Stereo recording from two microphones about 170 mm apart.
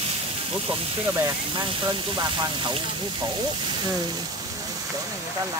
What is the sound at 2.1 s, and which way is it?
Speech, 25° right (ahead or behind).